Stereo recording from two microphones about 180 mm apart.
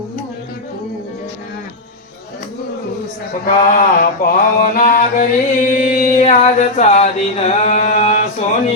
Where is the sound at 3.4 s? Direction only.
50° left (ahead or behind).